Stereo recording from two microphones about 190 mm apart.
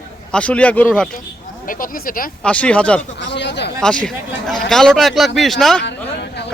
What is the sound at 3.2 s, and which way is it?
Speech, 65° left (ahead or behind).